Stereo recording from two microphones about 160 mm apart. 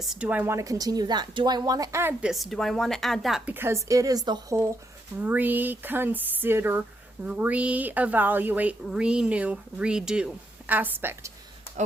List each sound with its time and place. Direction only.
0.0 s a woman's voice: 5° right (ahead or behind)
2.3 s speech: centre (ahead or behind)